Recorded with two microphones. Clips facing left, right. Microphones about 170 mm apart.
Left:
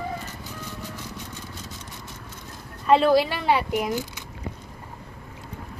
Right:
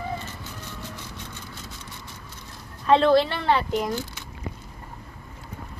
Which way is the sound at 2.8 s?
5° left (ahead or behind).